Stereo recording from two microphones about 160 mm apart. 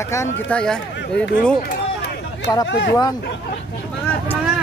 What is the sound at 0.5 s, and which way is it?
Speech, 5° left (ahead or behind).